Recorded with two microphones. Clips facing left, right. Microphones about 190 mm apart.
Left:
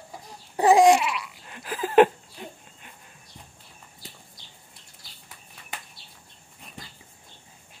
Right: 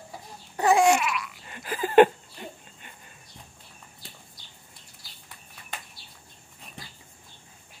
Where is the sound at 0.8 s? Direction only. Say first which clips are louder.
Left 4 dB; 30° left (ahead or behind).